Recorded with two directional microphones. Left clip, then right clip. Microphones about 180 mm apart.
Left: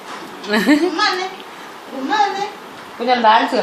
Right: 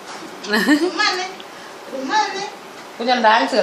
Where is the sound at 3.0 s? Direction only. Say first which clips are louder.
Left 2 dB; 15° right (ahead or behind).